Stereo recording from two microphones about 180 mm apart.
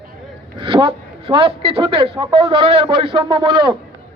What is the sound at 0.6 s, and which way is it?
Speech, 30° right (ahead or behind).